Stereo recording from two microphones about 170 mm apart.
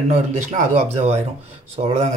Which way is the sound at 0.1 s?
45° right (ahead or behind).